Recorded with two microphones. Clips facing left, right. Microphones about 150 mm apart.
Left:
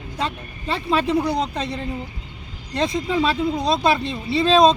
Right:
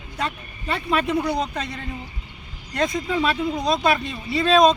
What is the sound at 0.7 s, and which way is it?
Speech, 30° left (ahead or behind).